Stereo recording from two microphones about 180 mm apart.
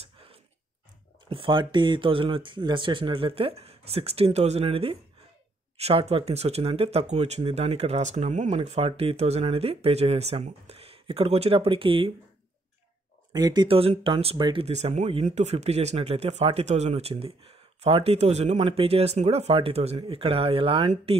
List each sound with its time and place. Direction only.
1.3 s speech: 30° right (ahead or behind)
13.3 s speech: 20° right (ahead or behind)